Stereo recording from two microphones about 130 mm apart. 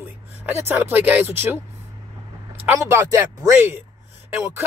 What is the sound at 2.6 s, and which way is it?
Speech, 20° right (ahead or behind).